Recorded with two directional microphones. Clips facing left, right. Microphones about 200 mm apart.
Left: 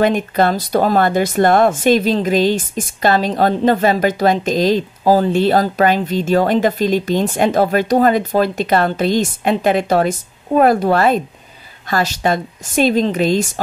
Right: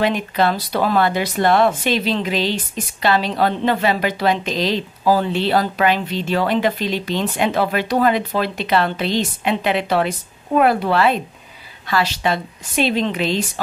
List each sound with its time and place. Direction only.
0.0 s speech: 45° left (ahead or behind)